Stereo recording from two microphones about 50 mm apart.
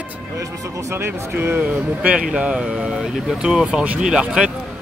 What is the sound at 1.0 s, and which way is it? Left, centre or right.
Speech, right.